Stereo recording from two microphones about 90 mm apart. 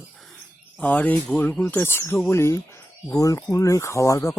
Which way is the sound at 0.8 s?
15° left (ahead or behind).